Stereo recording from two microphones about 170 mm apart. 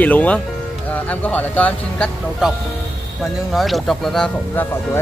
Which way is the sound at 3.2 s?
Centre (ahead or behind).